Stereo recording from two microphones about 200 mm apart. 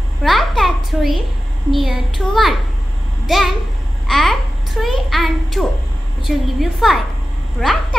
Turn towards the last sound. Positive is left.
turn(degrees=0)  # may be behind; listen again after turning